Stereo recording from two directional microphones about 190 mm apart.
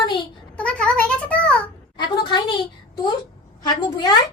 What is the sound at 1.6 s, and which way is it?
Speech, 25° left (ahead or behind).